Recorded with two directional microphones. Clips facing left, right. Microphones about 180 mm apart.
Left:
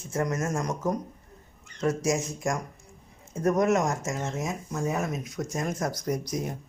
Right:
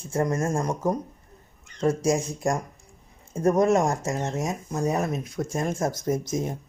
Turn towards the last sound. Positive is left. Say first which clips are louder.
# right 3 dB
turn(degrees=-25)  # may be behind; listen again after turning